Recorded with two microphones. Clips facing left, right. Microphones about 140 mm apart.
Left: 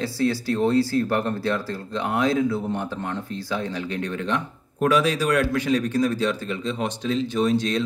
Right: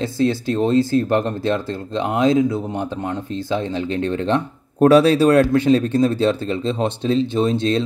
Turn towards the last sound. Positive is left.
turn(degrees=-25)  # may be behind; listen again after turning